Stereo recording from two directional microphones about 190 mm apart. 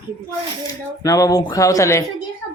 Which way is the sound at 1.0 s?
20° left (ahead or behind).